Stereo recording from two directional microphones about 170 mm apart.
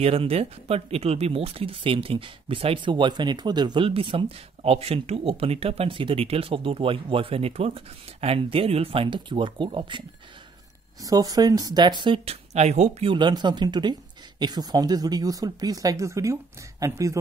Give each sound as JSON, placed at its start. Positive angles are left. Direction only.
{"t": 0.0, "sound": "speech", "side_deg": -35}
{"t": 13.1, "sound": "speech", "side_deg": -25}